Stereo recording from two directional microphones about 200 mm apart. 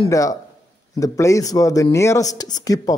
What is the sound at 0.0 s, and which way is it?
Speech, 15° left (ahead or behind).